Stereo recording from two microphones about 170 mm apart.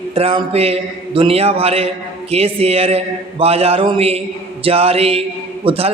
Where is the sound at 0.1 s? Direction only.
35° right (ahead or behind).